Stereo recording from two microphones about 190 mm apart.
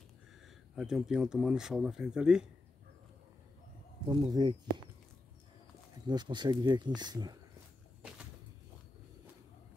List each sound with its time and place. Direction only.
0.7 s speech: 5° right (ahead or behind)
4.1 s speech: 25° right (ahead or behind)
6.0 s speech: 25° right (ahead or behind)